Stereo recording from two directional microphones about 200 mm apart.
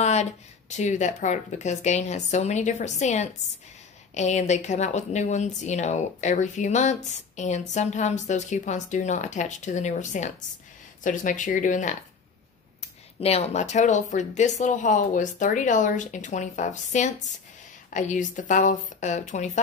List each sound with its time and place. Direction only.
0.0 s speech: 35° left (ahead or behind)
13.2 s speech: 35° left (ahead or behind)